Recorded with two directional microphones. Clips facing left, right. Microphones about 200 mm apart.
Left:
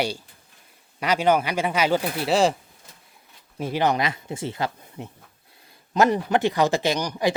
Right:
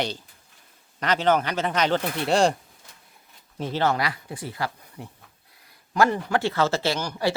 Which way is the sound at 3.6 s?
15° left (ahead or behind).